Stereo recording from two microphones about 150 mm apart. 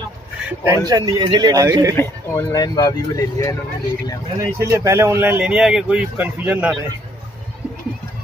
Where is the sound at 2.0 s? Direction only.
20° left (ahead or behind).